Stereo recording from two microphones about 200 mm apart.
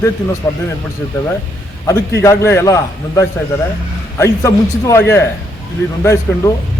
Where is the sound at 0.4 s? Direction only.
15° left (ahead or behind).